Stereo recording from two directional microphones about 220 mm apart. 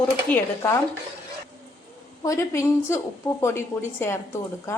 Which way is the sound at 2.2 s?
15° left (ahead or behind).